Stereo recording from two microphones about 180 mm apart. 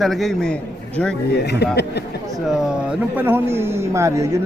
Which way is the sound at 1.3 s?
65° left (ahead or behind).